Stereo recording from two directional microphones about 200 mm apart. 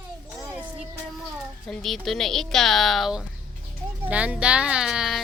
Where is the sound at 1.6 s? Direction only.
Centre (ahead or behind).